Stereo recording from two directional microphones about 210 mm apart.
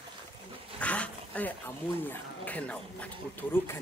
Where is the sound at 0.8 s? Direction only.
5° left (ahead or behind).